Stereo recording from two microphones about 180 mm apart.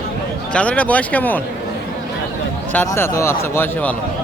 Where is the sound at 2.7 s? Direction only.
10° left (ahead or behind).